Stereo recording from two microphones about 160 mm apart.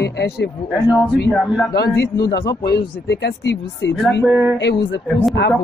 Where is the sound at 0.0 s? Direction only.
90° left.